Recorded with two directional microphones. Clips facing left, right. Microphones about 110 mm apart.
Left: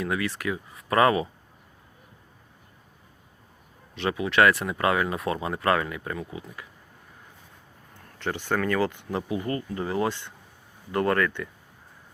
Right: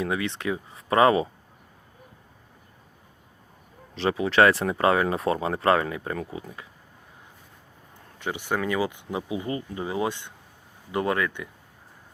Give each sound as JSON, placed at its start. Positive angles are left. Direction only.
{"t": 0.0, "sound": "speech", "side_deg": -25}
{"t": 3.9, "sound": "speech", "side_deg": -30}
{"t": 8.2, "sound": "speech", "side_deg": -15}